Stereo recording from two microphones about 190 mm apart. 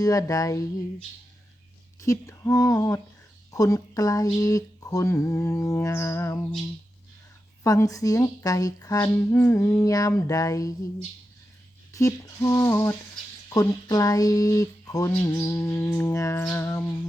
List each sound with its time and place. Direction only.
0.0 s a sound: 20° left (ahead or behind)
2.0 s speech: 15° left (ahead or behind)
7.6 s speech: 15° left (ahead or behind)
11.9 s speech: 15° left (ahead or behind)